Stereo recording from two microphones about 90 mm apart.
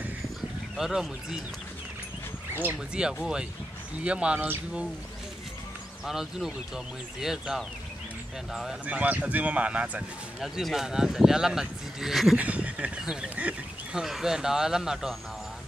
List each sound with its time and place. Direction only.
0.7 s speech: 5° right (ahead or behind)
2.9 s speech: 10° right (ahead or behind)
6.0 s speech: 5° right (ahead or behind)
8.8 s speech: 15° right (ahead or behind)
10.4 s speech: 5° right (ahead or behind)
12.4 s speech: 15° right (ahead or behind)